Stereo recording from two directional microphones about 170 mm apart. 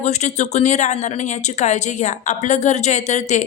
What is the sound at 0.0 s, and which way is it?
Speech, 40° left (ahead or behind).